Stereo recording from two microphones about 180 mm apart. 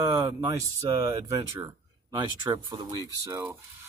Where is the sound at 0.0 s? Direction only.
15° right (ahead or behind).